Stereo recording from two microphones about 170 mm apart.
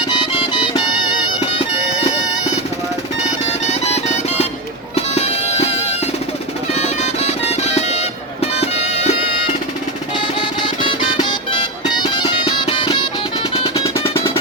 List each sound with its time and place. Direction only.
0.1 s music: 25° left (ahead or behind)
1.4 s music: 40° left (ahead or behind)
3.7 s music: 40° left (ahead or behind)
6.7 s music: 40° left (ahead or behind)
10.8 s music: 25° left (ahead or behind)